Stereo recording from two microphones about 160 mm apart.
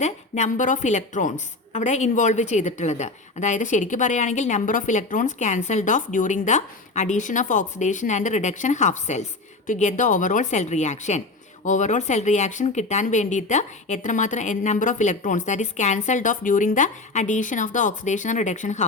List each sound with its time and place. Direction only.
0.0 s a woman's voice: 50° left (ahead or behind)